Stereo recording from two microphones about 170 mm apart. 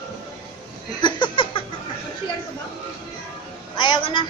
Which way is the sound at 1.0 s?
30° left (ahead or behind).